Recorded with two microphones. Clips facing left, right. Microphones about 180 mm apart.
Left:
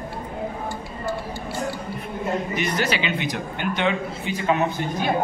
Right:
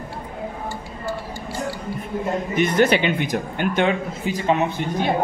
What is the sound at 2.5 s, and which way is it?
Speech, 55° right (ahead or behind).